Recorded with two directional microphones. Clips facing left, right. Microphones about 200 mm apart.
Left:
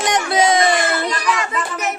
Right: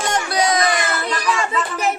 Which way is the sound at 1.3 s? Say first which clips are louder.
Right 1 dB; 30° right (ahead or behind).